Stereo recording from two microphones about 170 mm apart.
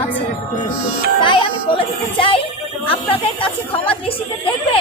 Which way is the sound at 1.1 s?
30° left (ahead or behind).